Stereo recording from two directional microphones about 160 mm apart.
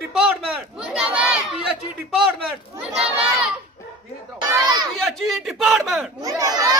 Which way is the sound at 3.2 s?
10° right (ahead or behind).